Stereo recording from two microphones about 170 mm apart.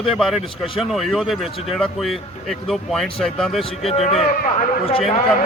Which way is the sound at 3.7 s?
40° left (ahead or behind).